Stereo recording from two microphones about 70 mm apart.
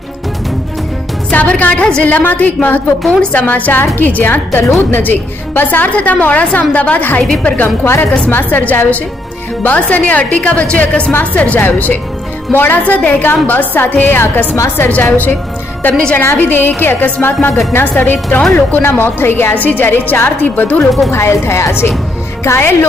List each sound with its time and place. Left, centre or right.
1.3 s a woman's voice: left
15.9 s a woman's voice: centre
16.2 s a woman's voice: left
21.1 s a woman's voice: left